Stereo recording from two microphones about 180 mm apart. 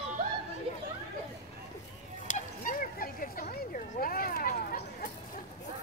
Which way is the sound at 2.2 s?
45° left (ahead or behind).